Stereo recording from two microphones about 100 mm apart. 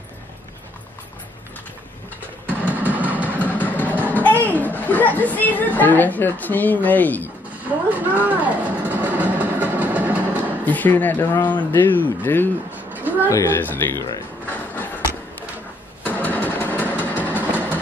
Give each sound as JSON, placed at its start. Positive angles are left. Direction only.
{"t": 2.4, "sound": "music", "side_deg": -15}
{"t": 3.3, "sound": "music", "side_deg": 15}
{"t": 4.1, "sound": "speech", "side_deg": 15}
{"t": 7.6, "sound": "a sound", "side_deg": -15}
{"t": 10.6, "sound": "speech", "side_deg": 15}
{"t": 12.7, "sound": "a sound", "side_deg": -15}
{"t": 13.6, "sound": "speech", "side_deg": 20}
{"t": 14.4, "sound": "a sound", "side_deg": 20}
{"t": 16.0, "sound": "vehicle", "side_deg": 15}
{"t": 17.4, "sound": "vehicle", "side_deg": -20}